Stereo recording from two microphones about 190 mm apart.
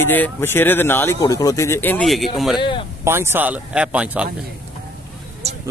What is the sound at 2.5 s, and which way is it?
Speech, 25° left (ahead or behind).